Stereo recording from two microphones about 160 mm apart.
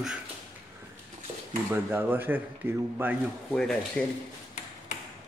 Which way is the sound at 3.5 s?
5° left (ahead or behind).